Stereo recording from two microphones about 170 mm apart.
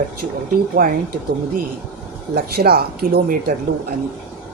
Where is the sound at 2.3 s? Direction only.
65° right (ahead or behind).